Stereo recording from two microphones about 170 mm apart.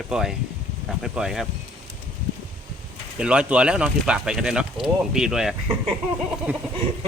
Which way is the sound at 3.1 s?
5° right (ahead or behind).